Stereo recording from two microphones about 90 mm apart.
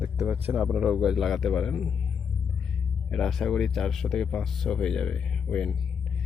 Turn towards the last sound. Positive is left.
turn(degrees=0)  # may be behind; listen again after turning